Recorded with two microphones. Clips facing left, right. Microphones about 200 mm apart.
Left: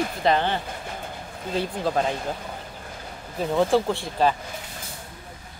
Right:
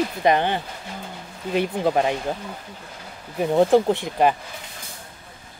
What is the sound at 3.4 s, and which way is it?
Speech, 20° right (ahead or behind).